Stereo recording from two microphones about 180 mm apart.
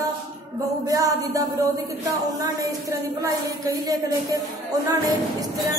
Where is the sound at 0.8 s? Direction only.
20° right (ahead or behind).